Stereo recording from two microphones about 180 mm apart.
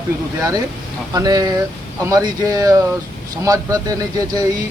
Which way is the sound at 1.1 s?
20° right (ahead or behind).